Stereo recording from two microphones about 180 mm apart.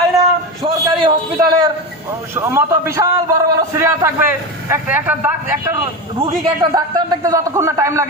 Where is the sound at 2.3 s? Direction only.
15° right (ahead or behind).